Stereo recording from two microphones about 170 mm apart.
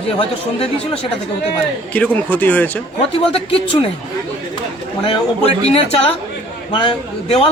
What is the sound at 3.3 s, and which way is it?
Speech, 35° left (ahead or behind).